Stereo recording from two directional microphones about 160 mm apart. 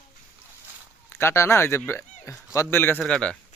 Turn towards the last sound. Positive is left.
turn(degrees=5)  # may be behind; listen again after turning